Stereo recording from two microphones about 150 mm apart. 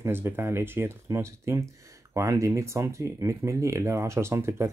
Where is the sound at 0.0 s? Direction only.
15° right (ahead or behind).